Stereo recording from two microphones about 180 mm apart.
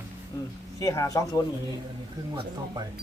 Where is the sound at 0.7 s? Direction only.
20° left (ahead or behind).